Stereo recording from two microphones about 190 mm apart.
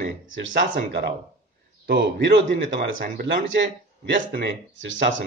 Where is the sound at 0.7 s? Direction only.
60° right (ahead or behind).